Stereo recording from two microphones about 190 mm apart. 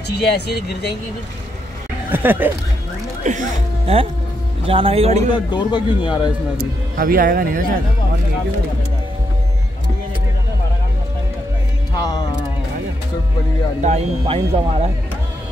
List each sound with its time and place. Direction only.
0.1 s speech: 60° left (ahead or behind)
2.0 s speech: 10° right (ahead or behind)
3.3 s speech: 35° right (ahead or behind)
5.5 s speech: 25° left (ahead or behind)
7.0 s speech: 50° right (ahead or behind)
13.8 s speech: 35° right (ahead or behind)